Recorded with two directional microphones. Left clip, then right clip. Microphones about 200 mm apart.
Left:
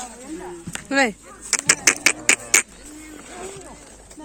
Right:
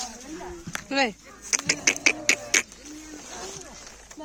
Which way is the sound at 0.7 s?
Centre (ahead or behind).